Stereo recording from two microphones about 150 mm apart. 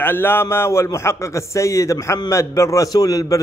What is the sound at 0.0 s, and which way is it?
A man's voice, 15° left (ahead or behind).